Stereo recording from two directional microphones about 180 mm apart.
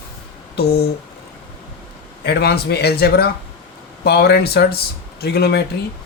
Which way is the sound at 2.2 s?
65° left (ahead or behind).